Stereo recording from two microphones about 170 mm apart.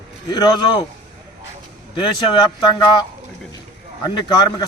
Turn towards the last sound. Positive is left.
turn(degrees=25)  # may be behind; listen again after turning